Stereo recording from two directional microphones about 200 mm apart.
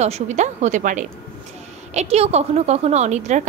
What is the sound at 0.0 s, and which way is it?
A woman's voice, 35° right (ahead or behind).